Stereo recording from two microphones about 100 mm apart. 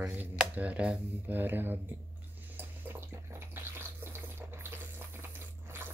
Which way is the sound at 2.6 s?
20° right (ahead or behind).